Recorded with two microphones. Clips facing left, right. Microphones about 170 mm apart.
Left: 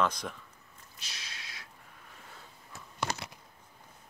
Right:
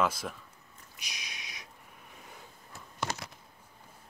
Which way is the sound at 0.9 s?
15° right (ahead or behind).